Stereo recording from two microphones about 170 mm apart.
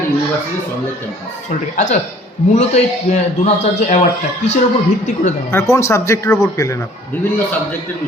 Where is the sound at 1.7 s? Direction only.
45° left (ahead or behind).